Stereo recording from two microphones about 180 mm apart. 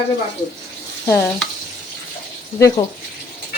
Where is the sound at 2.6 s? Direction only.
20° left (ahead or behind).